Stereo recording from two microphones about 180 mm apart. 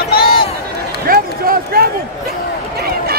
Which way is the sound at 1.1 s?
55° right (ahead or behind).